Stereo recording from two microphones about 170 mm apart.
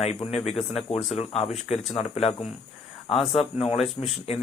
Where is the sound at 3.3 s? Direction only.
35° left (ahead or behind).